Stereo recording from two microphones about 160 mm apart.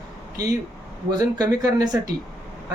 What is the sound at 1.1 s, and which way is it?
Speech, 25° right (ahead or behind).